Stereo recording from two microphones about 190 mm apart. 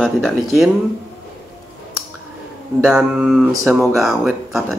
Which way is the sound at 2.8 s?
5° right (ahead or behind).